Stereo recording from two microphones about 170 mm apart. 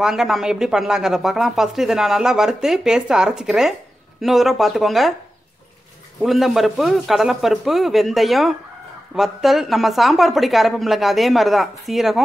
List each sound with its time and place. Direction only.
0.0 s speech: 5° right (ahead or behind)
6.2 s speech: centre (ahead or behind)